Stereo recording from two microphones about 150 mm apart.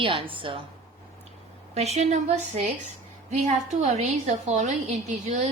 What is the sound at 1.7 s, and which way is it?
A woman's voice, 45° right (ahead or behind).